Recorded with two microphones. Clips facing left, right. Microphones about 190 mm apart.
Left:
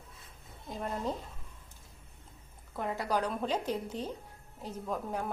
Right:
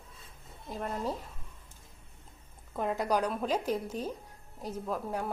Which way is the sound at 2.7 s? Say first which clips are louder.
Right 3 dB; 20° right (ahead or behind).